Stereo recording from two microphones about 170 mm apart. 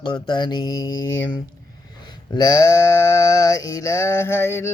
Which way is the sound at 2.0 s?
25° left (ahead or behind).